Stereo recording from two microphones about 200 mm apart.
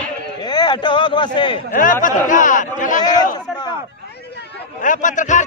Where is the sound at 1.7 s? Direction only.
40° left (ahead or behind).